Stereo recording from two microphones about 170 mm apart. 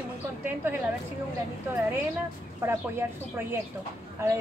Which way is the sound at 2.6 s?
15° right (ahead or behind).